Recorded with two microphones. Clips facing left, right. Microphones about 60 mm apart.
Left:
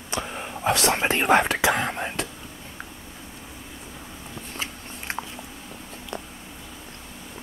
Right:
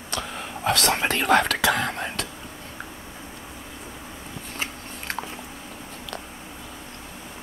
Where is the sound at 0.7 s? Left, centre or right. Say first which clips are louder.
Left 1 dB; left.